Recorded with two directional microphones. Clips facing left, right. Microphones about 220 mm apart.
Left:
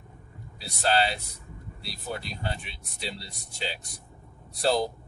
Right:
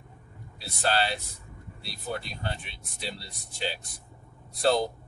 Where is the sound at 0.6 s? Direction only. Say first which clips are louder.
Left 2 dB; centre (ahead or behind).